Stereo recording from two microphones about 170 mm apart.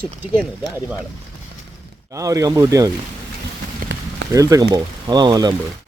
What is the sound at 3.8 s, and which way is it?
Run, 55° right (ahead or behind).